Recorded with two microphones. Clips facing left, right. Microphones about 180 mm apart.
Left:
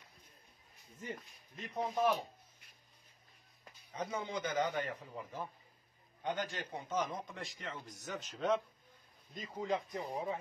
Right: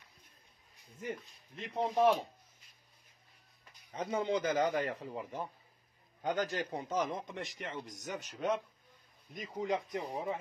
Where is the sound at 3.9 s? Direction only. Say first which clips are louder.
Right 6 dB; 30° right (ahead or behind).